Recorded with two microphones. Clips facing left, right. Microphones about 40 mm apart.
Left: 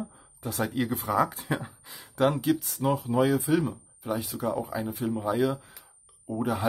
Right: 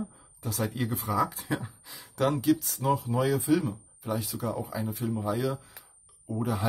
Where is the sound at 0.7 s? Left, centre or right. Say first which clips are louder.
Left 3 dB; left.